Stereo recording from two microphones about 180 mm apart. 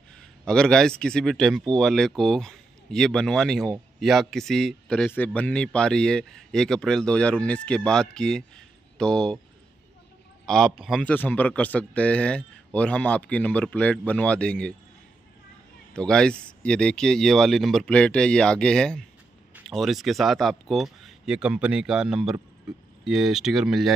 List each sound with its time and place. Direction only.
0.2 s a man's voice: 5° left (ahead or behind)
10.4 s a man's voice: 5° left (ahead or behind)
15.9 s speech: 5° left (ahead or behind)